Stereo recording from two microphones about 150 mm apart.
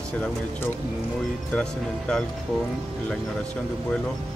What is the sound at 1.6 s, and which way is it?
Speech, 5° left (ahead or behind).